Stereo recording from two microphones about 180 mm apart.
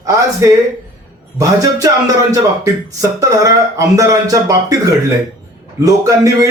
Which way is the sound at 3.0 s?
20° right (ahead or behind).